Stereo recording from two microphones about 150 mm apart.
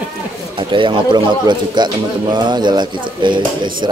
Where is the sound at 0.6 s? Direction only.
35° right (ahead or behind).